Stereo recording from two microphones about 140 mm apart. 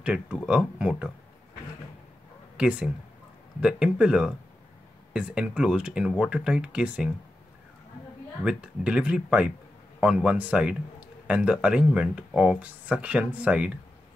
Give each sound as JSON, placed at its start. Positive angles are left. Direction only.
{"t": 0.0, "sound": "a man's voice", "side_deg": -5}
{"t": 2.5, "sound": "a man's voice", "side_deg": -5}
{"t": 8.5, "sound": "a man's voice", "side_deg": -5}